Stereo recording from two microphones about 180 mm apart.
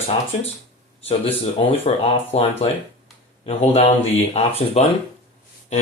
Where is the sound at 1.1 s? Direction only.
30° left (ahead or behind).